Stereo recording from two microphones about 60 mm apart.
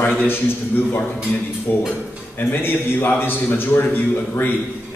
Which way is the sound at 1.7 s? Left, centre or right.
Left.